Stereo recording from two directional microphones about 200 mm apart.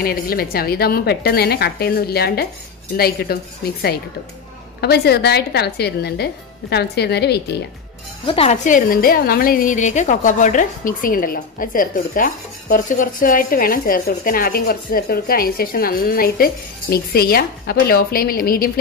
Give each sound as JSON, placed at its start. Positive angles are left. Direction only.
{"t": 0.0, "sound": "a woman's voice", "side_deg": 50}
{"t": 8.3, "sound": "a woman's voice", "side_deg": 30}